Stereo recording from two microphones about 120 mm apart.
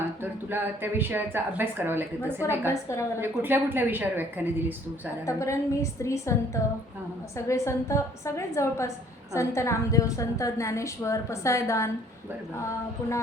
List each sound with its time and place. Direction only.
0.2 s speech: 15° right (ahead or behind)
2.4 s a woman's voice: 25° left (ahead or behind)
3.2 s speech: 15° right (ahead or behind)
5.2 s a woman's voice: 25° left (ahead or behind)